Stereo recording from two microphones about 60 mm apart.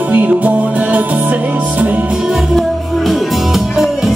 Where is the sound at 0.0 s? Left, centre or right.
Right.